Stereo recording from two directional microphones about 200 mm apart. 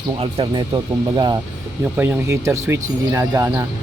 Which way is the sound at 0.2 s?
30° right (ahead or behind).